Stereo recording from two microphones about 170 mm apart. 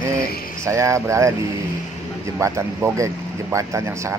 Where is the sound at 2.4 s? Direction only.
15° right (ahead or behind).